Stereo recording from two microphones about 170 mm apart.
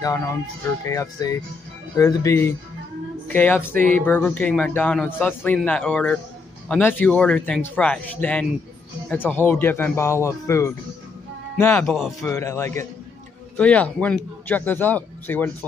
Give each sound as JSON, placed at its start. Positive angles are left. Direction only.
{"t": 0.0, "sound": "speech", "side_deg": 20}